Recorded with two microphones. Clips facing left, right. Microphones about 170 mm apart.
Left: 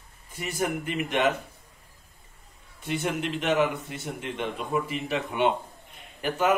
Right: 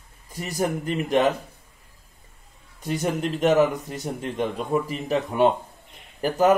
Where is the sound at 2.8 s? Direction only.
40° right (ahead or behind).